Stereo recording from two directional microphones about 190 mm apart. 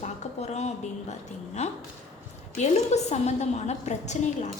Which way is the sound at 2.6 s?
35° left (ahead or behind).